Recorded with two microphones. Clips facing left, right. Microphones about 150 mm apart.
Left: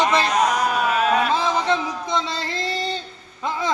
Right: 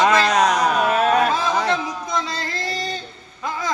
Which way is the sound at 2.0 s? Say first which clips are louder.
Left 1 dB; 25° left (ahead or behind).